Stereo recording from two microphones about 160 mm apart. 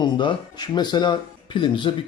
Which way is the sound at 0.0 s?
30° left (ahead or behind).